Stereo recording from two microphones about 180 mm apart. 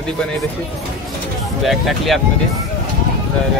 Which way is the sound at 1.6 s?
Centre (ahead or behind).